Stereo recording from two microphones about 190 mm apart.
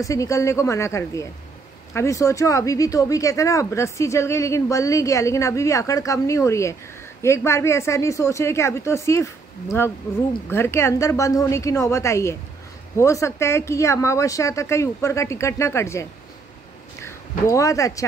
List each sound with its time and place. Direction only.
0.0 s speech: 15° left (ahead or behind)
10.5 s speech: 15° left (ahead or behind)